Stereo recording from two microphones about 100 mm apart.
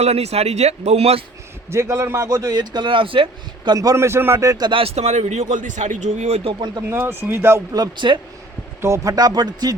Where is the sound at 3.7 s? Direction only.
40° right (ahead or behind).